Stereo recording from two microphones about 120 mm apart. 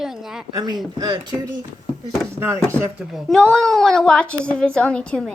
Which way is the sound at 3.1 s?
5° left (ahead or behind).